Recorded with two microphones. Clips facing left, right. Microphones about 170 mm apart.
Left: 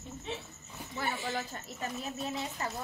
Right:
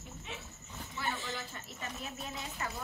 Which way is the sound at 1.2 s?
45° left (ahead or behind).